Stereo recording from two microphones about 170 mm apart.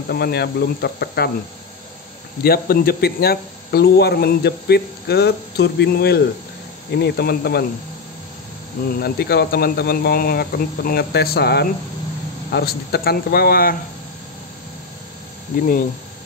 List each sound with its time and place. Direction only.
0.1 s speech: 70° left (ahead or behind)
2.4 s speech: 65° left (ahead or behind)
8.9 s speech: 65° left (ahead or behind)